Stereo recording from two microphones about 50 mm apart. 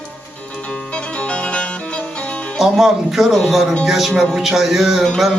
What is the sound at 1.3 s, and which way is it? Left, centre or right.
Music, left.